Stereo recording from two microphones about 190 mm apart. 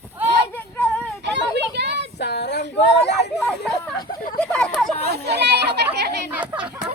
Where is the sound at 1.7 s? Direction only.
65° right (ahead or behind).